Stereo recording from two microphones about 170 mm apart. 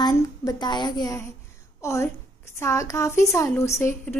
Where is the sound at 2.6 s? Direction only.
20° left (ahead or behind).